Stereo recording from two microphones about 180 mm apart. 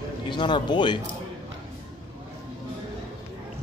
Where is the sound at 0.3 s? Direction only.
25° left (ahead or behind).